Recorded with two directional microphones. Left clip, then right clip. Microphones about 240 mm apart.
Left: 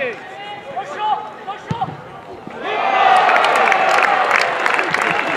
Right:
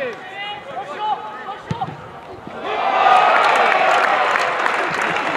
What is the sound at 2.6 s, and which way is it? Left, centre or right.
Crowd, centre.